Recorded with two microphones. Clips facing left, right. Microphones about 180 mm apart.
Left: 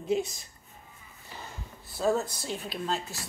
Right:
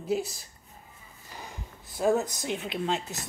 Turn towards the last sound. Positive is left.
turn(degrees=-20)  # may be behind; listen again after turning